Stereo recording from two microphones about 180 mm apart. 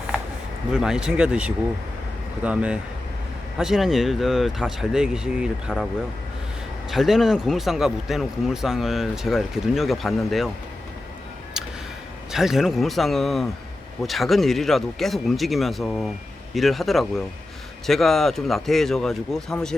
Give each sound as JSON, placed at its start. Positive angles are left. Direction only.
{"t": 0.7, "sound": "speech", "side_deg": -5}
{"t": 6.9, "sound": "speech", "side_deg": 0}
{"t": 12.3, "sound": "speech", "side_deg": 0}